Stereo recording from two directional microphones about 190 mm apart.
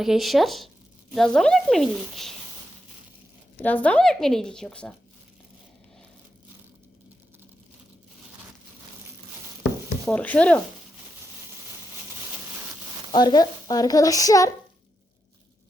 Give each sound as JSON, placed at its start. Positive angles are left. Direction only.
{"t": 0.0, "sound": "a woman's voice", "side_deg": 0}
{"t": 3.6, "sound": "a woman's voice", "side_deg": 10}
{"t": 10.1, "sound": "speech", "side_deg": 5}
{"t": 13.1, "sound": "speech", "side_deg": 20}